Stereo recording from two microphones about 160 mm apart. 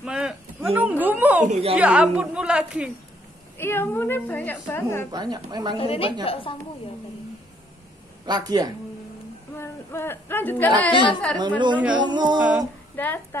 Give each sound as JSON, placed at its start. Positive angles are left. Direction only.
{"t": 0.0, "sound": "a sound", "side_deg": -5}
{"t": 0.7, "sound": "a woman's voice", "side_deg": -10}
{"t": 1.5, "sound": "a woman's voice", "side_deg": -40}
{"t": 1.8, "sound": "a woman's voice", "side_deg": -5}
{"t": 3.5, "sound": "a woman's voice", "side_deg": 15}
{"t": 5.1, "sound": "a woman's voice", "side_deg": -25}
{"t": 5.8, "sound": "a woman's voice", "side_deg": 35}
{"t": 8.3, "sound": "a woman's voice", "side_deg": -25}
{"t": 9.6, "sound": "speech", "side_deg": 15}
{"t": 10.9, "sound": "a woman's voice", "side_deg": 30}
{"t": 11.3, "sound": "a woman's voice", "side_deg": -25}
{"t": 12.4, "sound": "a woman's voice", "side_deg": -5}
{"t": 12.9, "sound": "speech", "side_deg": 10}